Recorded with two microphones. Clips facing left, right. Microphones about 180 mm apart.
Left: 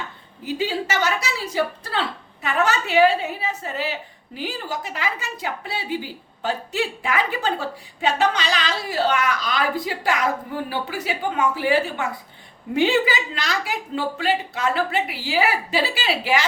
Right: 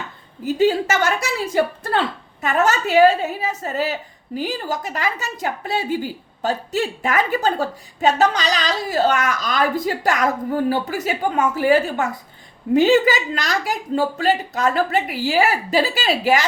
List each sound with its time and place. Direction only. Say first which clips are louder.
0.4 s a woman's voice: right 7 dB; 45° right (ahead or behind)